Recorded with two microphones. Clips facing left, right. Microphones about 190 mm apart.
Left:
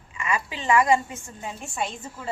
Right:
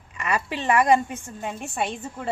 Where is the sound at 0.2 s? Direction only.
65° right (ahead or behind).